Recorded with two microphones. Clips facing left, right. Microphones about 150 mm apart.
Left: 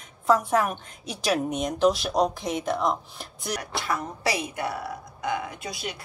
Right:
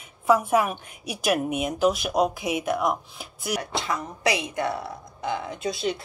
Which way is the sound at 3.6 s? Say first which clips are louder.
Right 1 dB; 20° right (ahead or behind).